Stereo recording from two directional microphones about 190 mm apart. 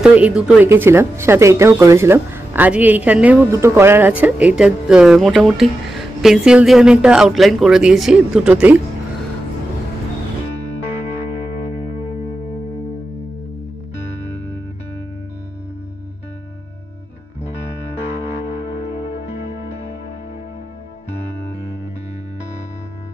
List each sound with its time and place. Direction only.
0.0 s speech: 5° right (ahead or behind)